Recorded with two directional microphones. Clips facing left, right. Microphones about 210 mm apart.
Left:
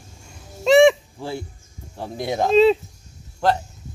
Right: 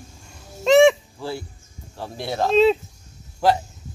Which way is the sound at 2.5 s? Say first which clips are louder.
Left 2 dB; centre (ahead or behind).